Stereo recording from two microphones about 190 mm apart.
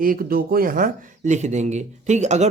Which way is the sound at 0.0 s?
50° right (ahead or behind).